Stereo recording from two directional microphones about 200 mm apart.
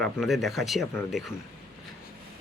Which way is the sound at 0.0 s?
Centre (ahead or behind).